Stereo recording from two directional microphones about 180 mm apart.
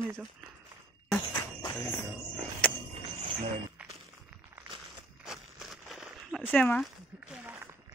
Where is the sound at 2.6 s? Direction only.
5° left (ahead or behind).